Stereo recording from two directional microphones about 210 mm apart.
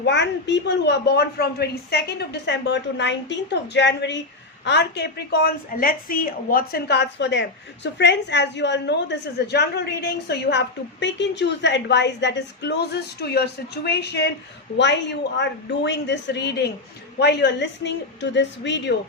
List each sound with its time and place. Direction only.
0.0 s a woman's voice: 55° left (ahead or behind)